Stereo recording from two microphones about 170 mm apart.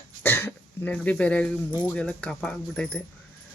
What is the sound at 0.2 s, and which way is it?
Cough, 15° left (ahead or behind).